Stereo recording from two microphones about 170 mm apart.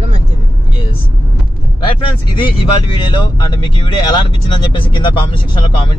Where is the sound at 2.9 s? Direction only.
30° left (ahead or behind).